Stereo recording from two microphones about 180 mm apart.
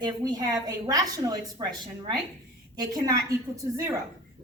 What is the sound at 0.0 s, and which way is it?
A woman's voice, 20° right (ahead or behind).